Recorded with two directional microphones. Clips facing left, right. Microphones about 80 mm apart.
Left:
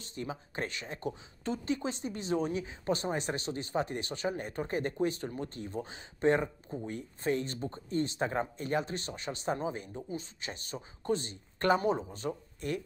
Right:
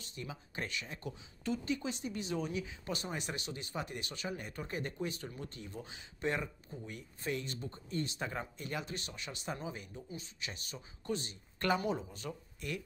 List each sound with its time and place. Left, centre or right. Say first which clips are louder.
0.0 s speech: left 6 dB; left